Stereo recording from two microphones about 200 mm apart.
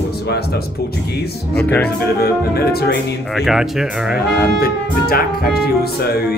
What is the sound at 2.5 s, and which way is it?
Speech, 50° left (ahead or behind).